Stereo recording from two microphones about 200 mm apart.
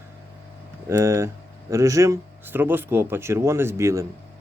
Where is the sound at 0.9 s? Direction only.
15° right (ahead or behind).